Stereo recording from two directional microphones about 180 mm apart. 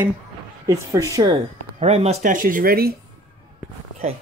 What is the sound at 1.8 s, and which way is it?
Speech, 35° right (ahead or behind).